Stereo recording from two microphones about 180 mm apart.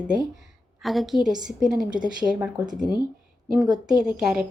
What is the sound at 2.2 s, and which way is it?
Speech, 5° right (ahead or behind).